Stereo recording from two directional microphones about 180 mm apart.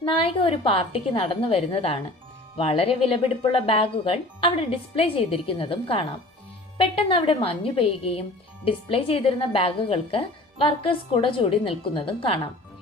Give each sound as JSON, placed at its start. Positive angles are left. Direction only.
{"t": 0.0, "sound": "speech", "side_deg": 30}